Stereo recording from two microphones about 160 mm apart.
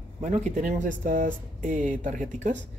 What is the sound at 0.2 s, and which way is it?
Speech, 45° right (ahead or behind).